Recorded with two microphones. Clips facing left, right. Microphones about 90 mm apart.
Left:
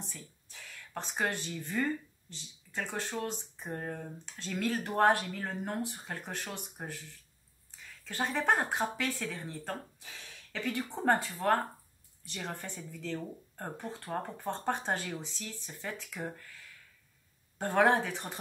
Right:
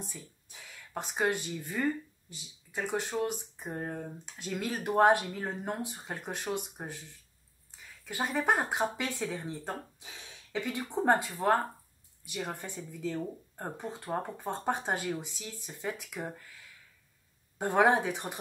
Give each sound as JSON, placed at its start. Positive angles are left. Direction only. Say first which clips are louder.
{"t": 0.0, "sound": "speech", "louder": "right 3 dB", "side_deg": -15}
{"t": 17.6, "sound": "speech", "louder": "right 1 dB", "side_deg": -15}